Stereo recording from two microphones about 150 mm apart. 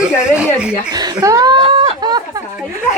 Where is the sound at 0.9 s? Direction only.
25° right (ahead or behind).